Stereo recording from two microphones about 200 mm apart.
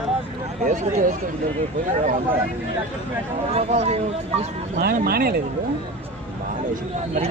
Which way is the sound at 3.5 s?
35° right (ahead or behind).